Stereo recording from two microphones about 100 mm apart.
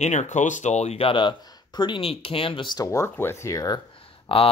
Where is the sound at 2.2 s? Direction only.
65° left (ahead or behind).